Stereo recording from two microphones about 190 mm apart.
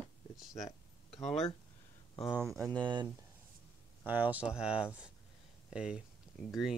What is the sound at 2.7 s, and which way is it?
Speech, 25° right (ahead or behind).